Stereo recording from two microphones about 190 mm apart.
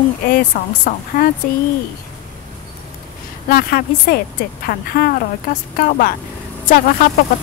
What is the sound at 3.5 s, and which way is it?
A woman's voice, 50° left (ahead or behind).